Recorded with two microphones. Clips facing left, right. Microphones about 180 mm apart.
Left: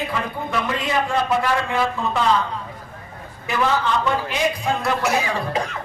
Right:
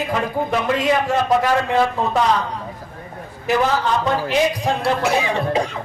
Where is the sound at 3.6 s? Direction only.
40° right (ahead or behind).